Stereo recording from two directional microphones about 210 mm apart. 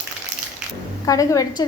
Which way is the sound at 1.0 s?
15° left (ahead or behind).